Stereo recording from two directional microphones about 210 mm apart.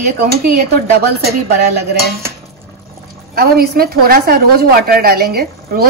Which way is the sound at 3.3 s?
45° right (ahead or behind).